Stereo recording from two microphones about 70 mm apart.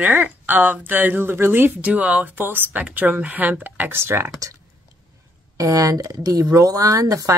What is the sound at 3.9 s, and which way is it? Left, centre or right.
Speech, right.